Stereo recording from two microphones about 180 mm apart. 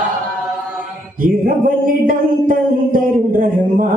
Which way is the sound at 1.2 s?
50° right (ahead or behind).